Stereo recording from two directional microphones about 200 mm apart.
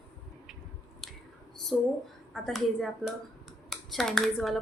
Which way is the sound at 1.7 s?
Centre (ahead or behind).